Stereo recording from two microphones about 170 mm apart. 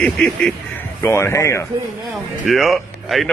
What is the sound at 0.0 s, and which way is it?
Speech, 5° left (ahead or behind).